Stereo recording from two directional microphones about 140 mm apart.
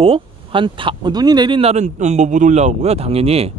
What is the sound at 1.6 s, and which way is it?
A man's voice, 55° right (ahead or behind).